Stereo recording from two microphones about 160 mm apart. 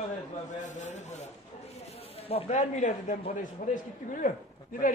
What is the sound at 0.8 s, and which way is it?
A man's voice, 45° left (ahead or behind).